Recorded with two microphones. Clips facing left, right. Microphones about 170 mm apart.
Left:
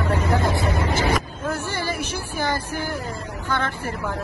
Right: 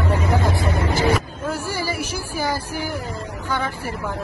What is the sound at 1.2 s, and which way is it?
Vehicle, 10° right (ahead or behind).